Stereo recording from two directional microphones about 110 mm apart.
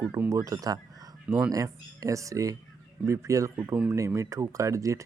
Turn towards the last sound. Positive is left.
turn(degrees=-30)  # may be behind; listen again after turning